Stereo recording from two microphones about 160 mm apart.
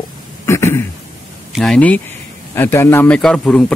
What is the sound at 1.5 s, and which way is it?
Speech, 5° left (ahead or behind).